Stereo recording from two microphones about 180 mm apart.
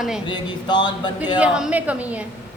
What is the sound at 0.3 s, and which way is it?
Speech, 25° left (ahead or behind).